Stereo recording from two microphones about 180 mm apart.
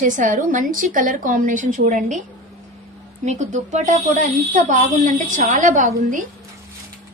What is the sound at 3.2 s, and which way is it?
A woman's voice, 40° right (ahead or behind).